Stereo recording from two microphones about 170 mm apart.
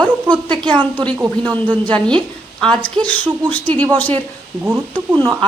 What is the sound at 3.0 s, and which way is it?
A woman's voice, 5° left (ahead or behind).